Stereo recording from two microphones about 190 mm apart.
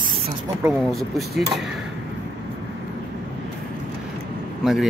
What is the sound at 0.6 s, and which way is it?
Speech, 5° right (ahead or behind).